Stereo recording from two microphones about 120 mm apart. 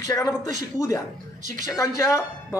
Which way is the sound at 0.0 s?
30° left (ahead or behind).